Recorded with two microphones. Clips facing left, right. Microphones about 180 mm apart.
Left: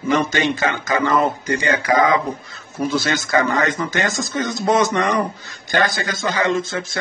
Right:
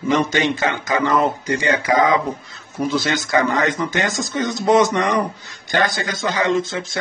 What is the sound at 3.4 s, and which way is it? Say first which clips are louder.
Speech: right 1 dB; 20° right (ahead or behind).